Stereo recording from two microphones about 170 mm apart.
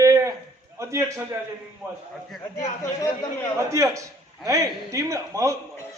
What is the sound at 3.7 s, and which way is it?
A man's voice, 20° right (ahead or behind).